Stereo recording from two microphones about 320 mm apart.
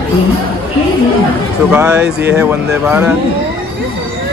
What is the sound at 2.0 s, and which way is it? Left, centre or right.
Speech, right.